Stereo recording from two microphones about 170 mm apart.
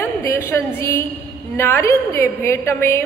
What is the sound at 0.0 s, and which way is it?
Music, 15° left (ahead or behind).